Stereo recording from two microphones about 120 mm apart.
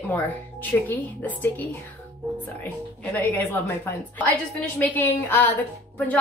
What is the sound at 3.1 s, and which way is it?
Speech, 15° left (ahead or behind).